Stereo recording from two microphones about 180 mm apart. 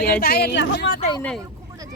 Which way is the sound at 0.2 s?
60° left (ahead or behind).